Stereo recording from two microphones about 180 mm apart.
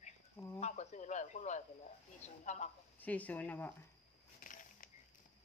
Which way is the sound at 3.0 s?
10° left (ahead or behind).